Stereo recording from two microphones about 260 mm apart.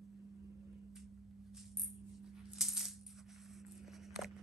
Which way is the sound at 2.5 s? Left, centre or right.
Centre.